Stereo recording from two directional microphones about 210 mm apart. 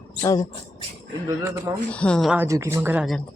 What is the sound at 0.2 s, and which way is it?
Speech, 15° left (ahead or behind).